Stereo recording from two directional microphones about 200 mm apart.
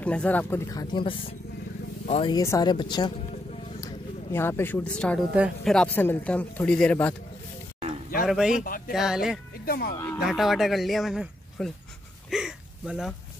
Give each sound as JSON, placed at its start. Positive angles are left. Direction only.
{"t": 0.0, "sound": "a man's voice", "side_deg": 5}
{"t": 2.3, "sound": "speech", "side_deg": 15}
{"t": 3.8, "sound": "a man's voice", "side_deg": 10}
{"t": 8.3, "sound": "speech", "side_deg": -5}
{"t": 8.6, "sound": "speech", "side_deg": 45}
{"t": 8.9, "sound": "speech", "side_deg": -5}
{"t": 9.7, "sound": "speech", "side_deg": 50}
{"t": 10.2, "sound": "speech", "side_deg": 0}
{"t": 12.3, "sound": "a sound", "side_deg": -5}